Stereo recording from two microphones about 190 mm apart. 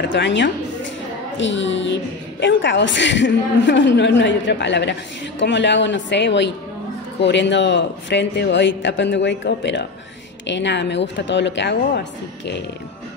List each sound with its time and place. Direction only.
0.1 s a man's voice: 70° left (ahead or behind)